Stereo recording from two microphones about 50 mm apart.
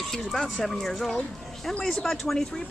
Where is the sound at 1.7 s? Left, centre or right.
Centre.